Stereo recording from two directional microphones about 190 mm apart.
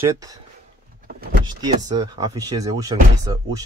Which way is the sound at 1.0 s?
50° right (ahead or behind).